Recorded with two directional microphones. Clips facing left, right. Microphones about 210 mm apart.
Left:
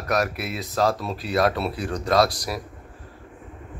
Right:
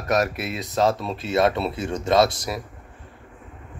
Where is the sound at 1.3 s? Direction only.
25° right (ahead or behind).